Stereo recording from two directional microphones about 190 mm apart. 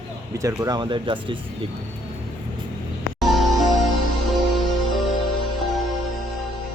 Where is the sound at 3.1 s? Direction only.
Centre (ahead or behind).